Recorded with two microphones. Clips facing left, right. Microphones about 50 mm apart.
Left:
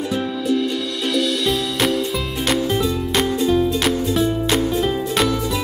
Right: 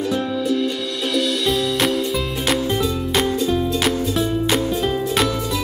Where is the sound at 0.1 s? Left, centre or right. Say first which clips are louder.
Left 2 dB; centre.